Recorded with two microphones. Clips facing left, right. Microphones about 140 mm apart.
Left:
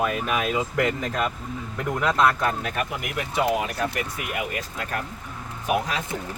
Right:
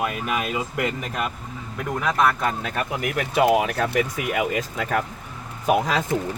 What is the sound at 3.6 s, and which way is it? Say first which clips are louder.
Speech: right 5 dB; 90° right.